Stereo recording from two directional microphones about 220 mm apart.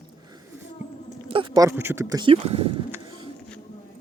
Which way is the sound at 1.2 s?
25° right (ahead or behind).